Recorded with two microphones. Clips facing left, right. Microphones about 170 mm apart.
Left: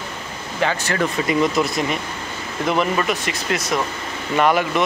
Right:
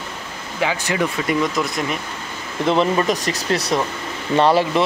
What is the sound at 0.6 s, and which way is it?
Speech, 10° right (ahead or behind).